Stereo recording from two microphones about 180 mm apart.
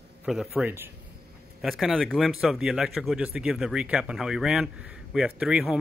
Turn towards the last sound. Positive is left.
turn(degrees=-5)  # may be behind; listen again after turning